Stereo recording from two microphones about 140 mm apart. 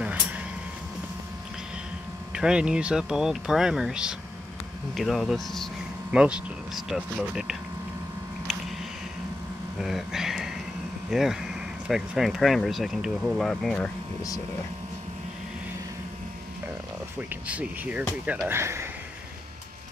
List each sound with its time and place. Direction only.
0.0 s a sound: 10° right (ahead or behind)
2.3 s speech: 5° right (ahead or behind)
9.8 s speech: centre (ahead or behind)
17.3 s speech: 10° right (ahead or behind)